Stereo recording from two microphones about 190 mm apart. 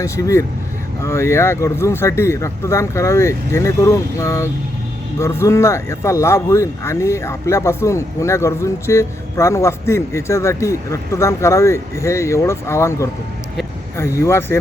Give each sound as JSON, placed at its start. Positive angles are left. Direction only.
{"t": 0.0, "sound": "speech", "side_deg": 15}